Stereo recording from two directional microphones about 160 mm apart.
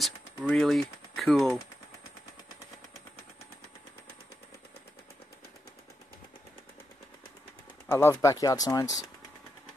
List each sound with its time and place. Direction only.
0.0 s speech: centre (ahead or behind)
7.9 s speech: 15° left (ahead or behind)